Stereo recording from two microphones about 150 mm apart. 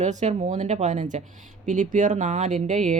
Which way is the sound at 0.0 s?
50° right (ahead or behind).